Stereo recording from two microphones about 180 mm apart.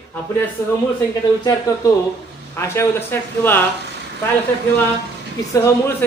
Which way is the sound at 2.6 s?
15° left (ahead or behind).